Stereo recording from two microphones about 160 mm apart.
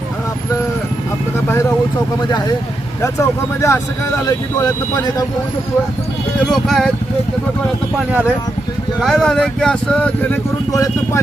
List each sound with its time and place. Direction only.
3.0 s speech: 20° left (ahead or behind)
6.4 s speech: centre (ahead or behind)
7.9 s speech: 5° right (ahead or behind)
10.7 s speech: 20° left (ahead or behind)